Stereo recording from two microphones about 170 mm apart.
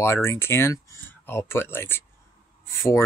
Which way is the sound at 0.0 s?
15° left (ahead or behind).